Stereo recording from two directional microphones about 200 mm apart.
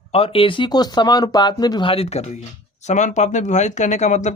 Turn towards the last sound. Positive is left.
turn(degrees=35)  # may be behind; listen again after turning